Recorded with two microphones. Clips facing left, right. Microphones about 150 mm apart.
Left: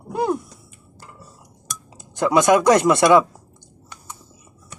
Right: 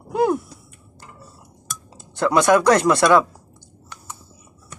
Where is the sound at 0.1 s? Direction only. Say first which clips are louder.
Right 3 dB; 15° right (ahead or behind).